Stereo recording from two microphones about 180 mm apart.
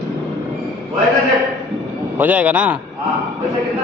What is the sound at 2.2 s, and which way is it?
Speech, 10° right (ahead or behind).